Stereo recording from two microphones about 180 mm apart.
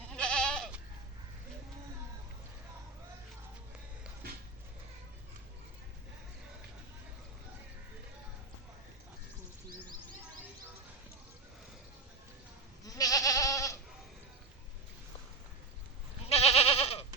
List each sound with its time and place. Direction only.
0.2 s goat: 5° left (ahead or behind)
13.0 s goat: 20° left (ahead or behind)
16.2 s goat: 35° left (ahead or behind)